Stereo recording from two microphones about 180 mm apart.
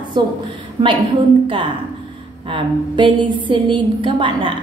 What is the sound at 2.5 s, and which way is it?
A woman's voice, 25° right (ahead or behind).